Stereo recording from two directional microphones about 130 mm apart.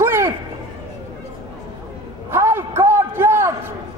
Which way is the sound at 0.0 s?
20° right (ahead or behind).